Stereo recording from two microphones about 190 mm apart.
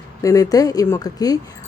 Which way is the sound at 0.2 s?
15° left (ahead or behind).